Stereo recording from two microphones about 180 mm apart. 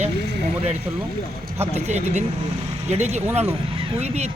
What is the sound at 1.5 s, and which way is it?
Speech, 35° right (ahead or behind).